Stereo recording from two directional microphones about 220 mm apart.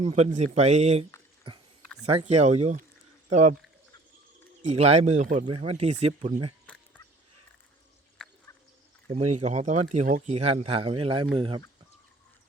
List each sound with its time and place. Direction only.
0.0 s a man's voice: 30° right (ahead or behind)
2.0 s speech: 30° right (ahead or behind)
4.6 s a man's voice: 30° right (ahead or behind)
9.4 s a man's voice: 30° right (ahead or behind)